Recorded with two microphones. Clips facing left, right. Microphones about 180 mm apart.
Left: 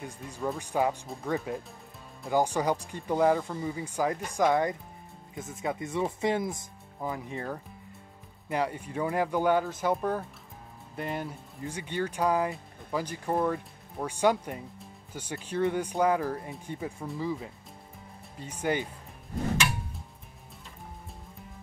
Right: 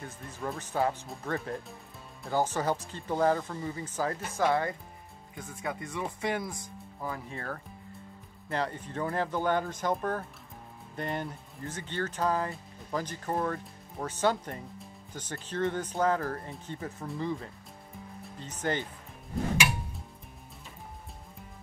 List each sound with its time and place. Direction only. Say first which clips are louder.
0.0 s speech: left 4 dB; 15° left (ahead or behind)